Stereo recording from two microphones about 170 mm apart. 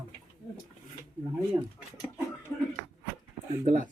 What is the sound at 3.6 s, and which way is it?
Speech, 45° right (ahead or behind).